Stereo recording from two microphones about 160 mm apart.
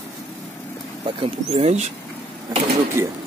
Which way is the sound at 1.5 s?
45° right (ahead or behind).